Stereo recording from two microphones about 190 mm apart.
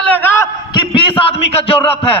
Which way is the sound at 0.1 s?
10° left (ahead or behind).